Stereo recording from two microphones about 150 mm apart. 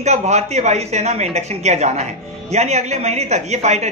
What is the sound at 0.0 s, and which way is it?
A man's voice, 45° right (ahead or behind).